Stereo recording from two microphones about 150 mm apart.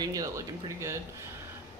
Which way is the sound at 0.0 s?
25° right (ahead or behind).